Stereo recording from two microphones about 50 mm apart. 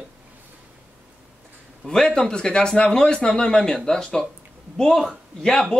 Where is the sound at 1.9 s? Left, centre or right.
Centre.